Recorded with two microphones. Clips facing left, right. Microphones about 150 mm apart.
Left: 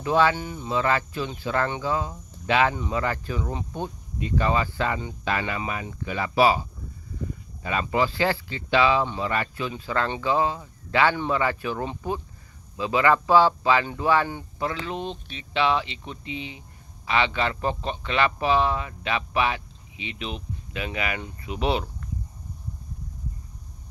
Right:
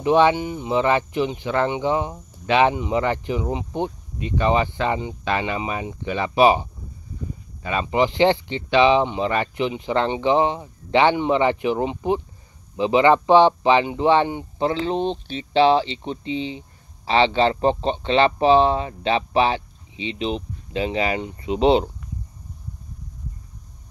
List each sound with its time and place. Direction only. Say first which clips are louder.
0.0 s speech: right 5 dB; 20° right (ahead or behind)
7.8 s speech: right 6 dB; 20° right (ahead or behind)